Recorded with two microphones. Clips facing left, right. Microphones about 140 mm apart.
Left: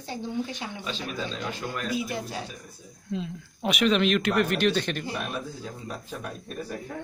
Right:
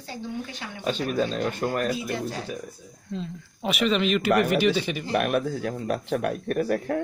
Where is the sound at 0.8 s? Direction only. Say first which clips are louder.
Right 11 dB; 50° right (ahead or behind).